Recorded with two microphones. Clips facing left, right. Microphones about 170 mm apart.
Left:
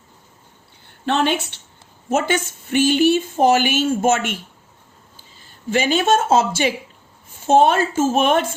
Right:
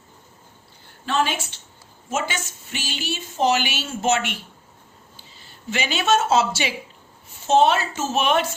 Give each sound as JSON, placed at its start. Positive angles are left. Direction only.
{"t": 1.0, "sound": "a woman's voice", "side_deg": 60}